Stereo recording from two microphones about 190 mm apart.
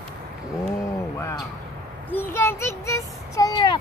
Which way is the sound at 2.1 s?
10° left (ahead or behind).